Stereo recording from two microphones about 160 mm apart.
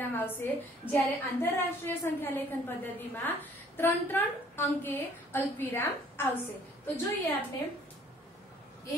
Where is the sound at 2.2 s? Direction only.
10° left (ahead or behind).